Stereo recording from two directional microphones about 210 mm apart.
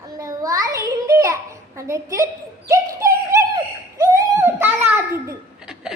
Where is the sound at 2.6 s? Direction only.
15° right (ahead or behind).